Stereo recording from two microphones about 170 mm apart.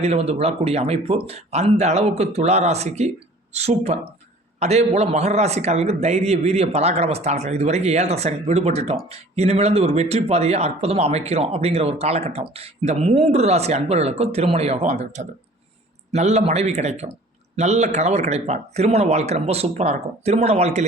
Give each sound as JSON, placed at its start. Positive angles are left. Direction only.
{"t": 0.0, "sound": "speech", "side_deg": -40}